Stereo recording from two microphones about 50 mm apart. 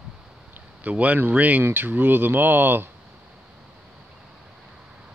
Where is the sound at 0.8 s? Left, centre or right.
Right.